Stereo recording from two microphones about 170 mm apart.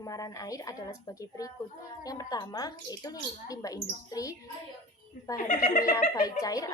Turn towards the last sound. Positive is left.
turn(degrees=20)  # may be behind; listen again after turning